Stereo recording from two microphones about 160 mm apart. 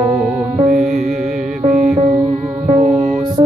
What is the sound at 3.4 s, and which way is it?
Music, 40° right (ahead or behind).